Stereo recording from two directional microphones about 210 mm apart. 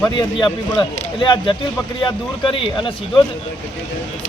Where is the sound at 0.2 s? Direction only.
20° left (ahead or behind).